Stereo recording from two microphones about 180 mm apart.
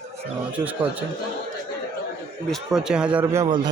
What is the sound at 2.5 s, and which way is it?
Speech, 5° right (ahead or behind).